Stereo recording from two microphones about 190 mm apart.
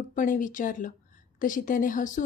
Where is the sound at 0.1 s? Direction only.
45° left (ahead or behind).